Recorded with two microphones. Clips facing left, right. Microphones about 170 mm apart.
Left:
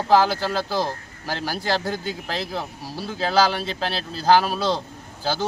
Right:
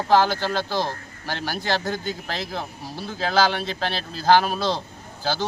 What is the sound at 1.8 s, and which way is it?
Speech, 35° left (ahead or behind).